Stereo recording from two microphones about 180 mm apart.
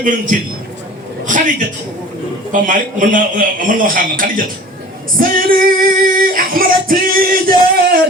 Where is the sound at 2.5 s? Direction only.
45° right (ahead or behind).